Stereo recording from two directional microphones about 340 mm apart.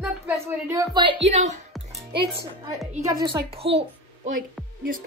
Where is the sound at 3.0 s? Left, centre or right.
Centre.